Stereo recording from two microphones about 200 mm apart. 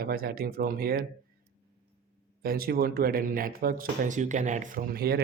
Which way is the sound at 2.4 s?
50° right (ahead or behind).